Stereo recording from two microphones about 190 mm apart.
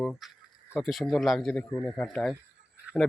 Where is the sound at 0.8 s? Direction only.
Centre (ahead or behind).